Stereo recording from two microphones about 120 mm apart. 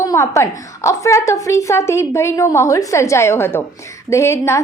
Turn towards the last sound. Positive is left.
turn(degrees=20)  # may be behind; listen again after turning